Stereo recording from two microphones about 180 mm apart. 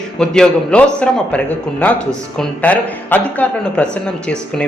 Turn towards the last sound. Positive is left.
turn(degrees=5)  # may be behind; listen again after turning